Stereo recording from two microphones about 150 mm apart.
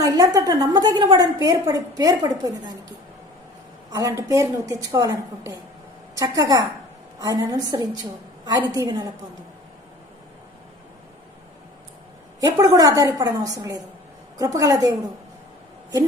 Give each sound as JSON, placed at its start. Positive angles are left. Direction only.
{"t": 0.0, "sound": "a woman's voice", "side_deg": -25}
{"t": 3.9, "sound": "a woman's voice", "side_deg": -25}
{"t": 12.5, "sound": "a woman's voice", "side_deg": -25}